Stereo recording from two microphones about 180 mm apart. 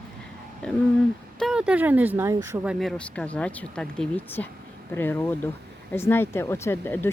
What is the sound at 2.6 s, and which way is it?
Speech, 5° left (ahead or behind).